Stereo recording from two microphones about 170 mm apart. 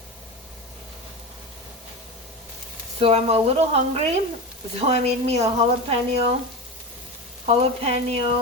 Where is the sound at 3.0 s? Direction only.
35° right (ahead or behind).